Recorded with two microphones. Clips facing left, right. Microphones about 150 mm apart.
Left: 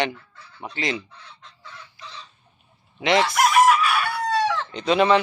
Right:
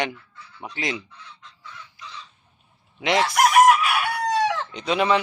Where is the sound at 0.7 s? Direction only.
10° right (ahead or behind).